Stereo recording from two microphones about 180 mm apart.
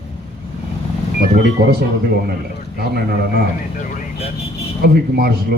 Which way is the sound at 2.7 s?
60° right (ahead or behind).